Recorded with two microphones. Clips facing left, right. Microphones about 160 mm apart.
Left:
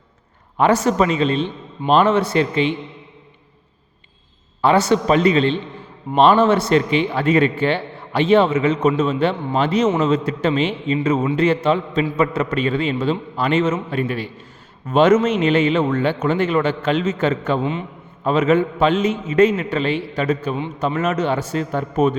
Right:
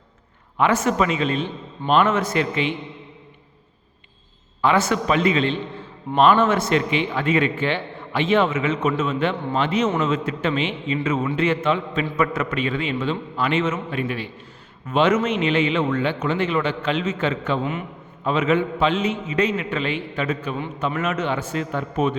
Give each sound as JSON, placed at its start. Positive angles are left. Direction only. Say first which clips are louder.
{"t": 0.5, "sound": "a man's voice", "louder": "left 4 dB", "side_deg": 35}
{"t": 4.6, "sound": "a man's voice", "louder": "left 4 dB", "side_deg": 35}
{"t": 17.6, "sound": "a man's voice", "louder": "left 3 dB", "side_deg": 25}
{"t": 18.2, "sound": "a man's voice", "louder": "left 4 dB", "side_deg": 40}